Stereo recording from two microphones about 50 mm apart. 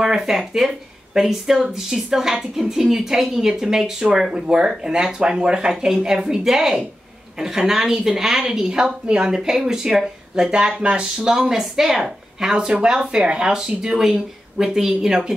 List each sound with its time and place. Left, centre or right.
0.0 s speech: centre